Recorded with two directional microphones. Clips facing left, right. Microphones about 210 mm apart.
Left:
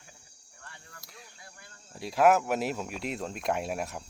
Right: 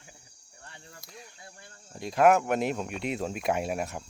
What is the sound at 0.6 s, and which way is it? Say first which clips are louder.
Cricket: right 2 dB; 25° right (ahead or behind).